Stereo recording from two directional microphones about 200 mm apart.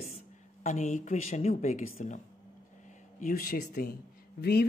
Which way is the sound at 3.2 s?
45° left (ahead or behind).